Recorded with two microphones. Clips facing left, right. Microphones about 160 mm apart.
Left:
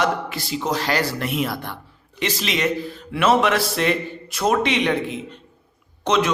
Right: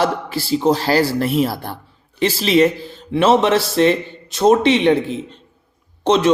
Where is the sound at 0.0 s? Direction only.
30° right (ahead or behind).